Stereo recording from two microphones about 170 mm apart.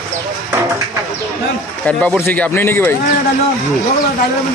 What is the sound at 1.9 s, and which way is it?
Speech, 10° left (ahead or behind).